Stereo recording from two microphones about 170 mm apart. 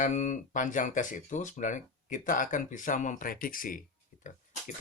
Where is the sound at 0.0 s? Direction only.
45° left (ahead or behind).